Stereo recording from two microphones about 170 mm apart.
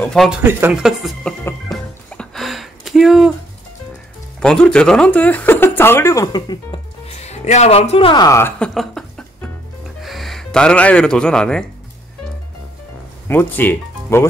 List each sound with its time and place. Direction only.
0.0 s speech: centre (ahead or behind)
0.4 s speech: 15° right (ahead or behind)
0.8 s speech: centre (ahead or behind)
1.7 s music: 5° left (ahead or behind)
4.4 s speech: 5° left (ahead or behind); by 6.8 s 25° left (ahead or behind)
7.2 s a woman's voice: 40° left (ahead or behind); by 11.6 s 5° left (ahead or behind)
13.3 s speech: 10° left (ahead or behind)